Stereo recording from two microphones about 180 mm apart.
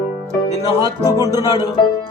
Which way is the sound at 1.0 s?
20° left (ahead or behind).